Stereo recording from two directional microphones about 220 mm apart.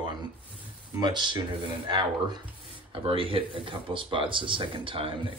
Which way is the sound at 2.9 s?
25° right (ahead or behind).